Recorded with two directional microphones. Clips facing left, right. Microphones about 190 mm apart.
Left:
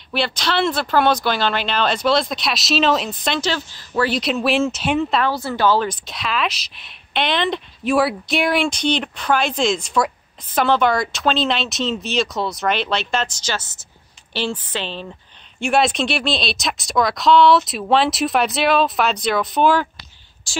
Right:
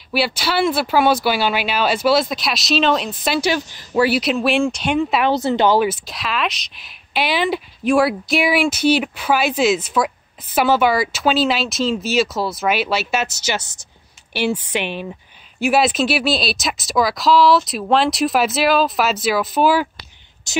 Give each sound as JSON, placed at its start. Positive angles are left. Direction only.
{"t": 0.1, "sound": "speech", "side_deg": -5}
{"t": 5.2, "sound": "speech", "side_deg": -20}
{"t": 6.0, "sound": "a woman's voice", "side_deg": 0}
{"t": 15.6, "sound": "a woman's voice", "side_deg": -5}
{"t": 20.5, "sound": "speech", "side_deg": -20}